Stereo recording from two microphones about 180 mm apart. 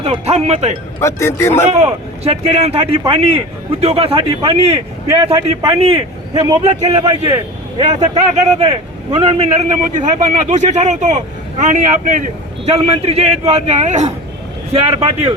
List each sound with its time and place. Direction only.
0.0 s a man's voice: 35° right (ahead or behind)
0.9 s a man's voice: 15° left (ahead or behind)
1.7 s a man's voice: 35° right (ahead or behind)
6.8 s a man's voice: 20° right (ahead or behind)
7.8 s a man's voice: 40° right (ahead or behind)